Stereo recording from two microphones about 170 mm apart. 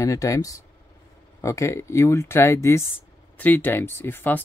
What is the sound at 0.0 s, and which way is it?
Speech, 20° left (ahead or behind).